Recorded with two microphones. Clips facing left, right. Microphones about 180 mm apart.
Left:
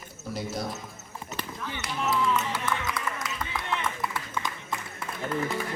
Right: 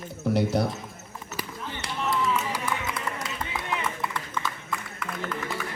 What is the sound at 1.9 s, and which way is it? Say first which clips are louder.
Music: even; centre (ahead or behind).